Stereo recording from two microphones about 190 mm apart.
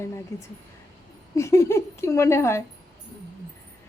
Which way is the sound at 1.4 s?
15° left (ahead or behind).